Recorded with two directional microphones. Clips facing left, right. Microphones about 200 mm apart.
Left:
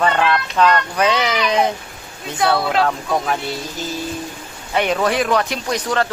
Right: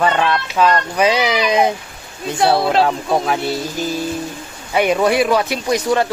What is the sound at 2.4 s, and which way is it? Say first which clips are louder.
Speech: right 3 dB; 25° right (ahead or behind).